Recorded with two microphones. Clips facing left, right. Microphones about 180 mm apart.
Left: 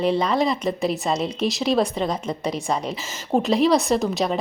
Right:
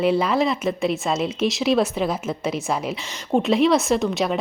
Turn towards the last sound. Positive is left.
turn(degrees=0)  # may be behind; listen again after turning